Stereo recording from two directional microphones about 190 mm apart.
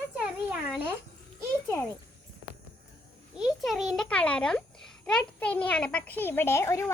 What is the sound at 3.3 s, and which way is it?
A child's voice, centre (ahead or behind).